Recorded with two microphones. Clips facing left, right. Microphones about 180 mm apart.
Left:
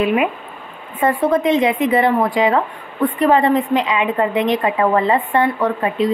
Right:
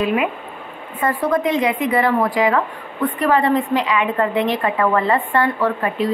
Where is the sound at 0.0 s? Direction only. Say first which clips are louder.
Left 2 dB; 25° left (ahead or behind).